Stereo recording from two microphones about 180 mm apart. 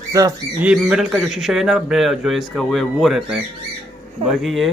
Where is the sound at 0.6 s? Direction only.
5° right (ahead or behind).